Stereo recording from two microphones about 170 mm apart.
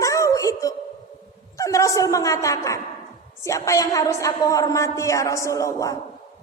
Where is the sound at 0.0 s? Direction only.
20° left (ahead or behind).